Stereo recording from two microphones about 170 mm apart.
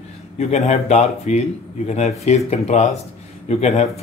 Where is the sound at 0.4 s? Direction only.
40° left (ahead or behind).